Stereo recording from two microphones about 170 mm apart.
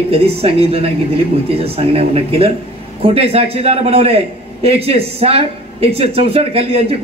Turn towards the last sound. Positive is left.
turn(degrees=-35)  # may be behind; listen again after turning